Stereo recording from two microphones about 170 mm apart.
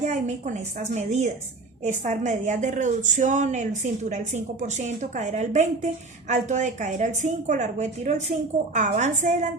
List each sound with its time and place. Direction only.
0.0 s a woman's voice: 45° right (ahead or behind)